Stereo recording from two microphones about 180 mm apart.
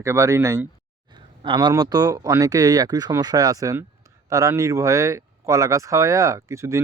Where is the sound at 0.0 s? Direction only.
15° right (ahead or behind).